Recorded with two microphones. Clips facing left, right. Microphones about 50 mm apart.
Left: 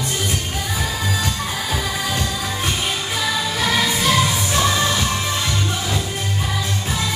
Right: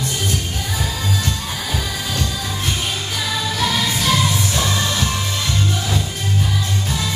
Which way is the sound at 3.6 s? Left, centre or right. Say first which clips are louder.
Left 1 dB; left.